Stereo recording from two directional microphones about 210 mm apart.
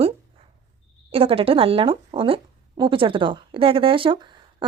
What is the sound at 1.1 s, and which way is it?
Speech, 25° right (ahead or behind).